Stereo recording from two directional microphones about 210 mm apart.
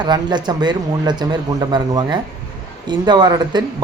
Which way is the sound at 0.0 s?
20° right (ahead or behind).